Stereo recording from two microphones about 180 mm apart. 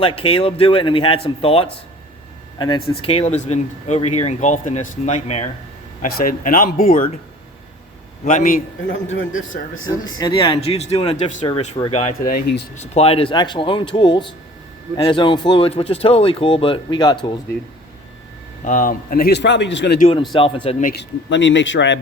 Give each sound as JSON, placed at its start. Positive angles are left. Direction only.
{"t": 0.0, "sound": "speech", "side_deg": 30}
{"t": 6.0, "sound": "speech", "side_deg": 55}
{"t": 8.2, "sound": "speech", "side_deg": 45}
{"t": 9.8, "sound": "speech", "side_deg": 25}
{"t": 12.8, "sound": "speech", "side_deg": 35}
{"t": 18.6, "sound": "a man's voice", "side_deg": 45}
{"t": 20.0, "sound": "speech", "side_deg": 35}
{"t": 20.9, "sound": "speech", "side_deg": 75}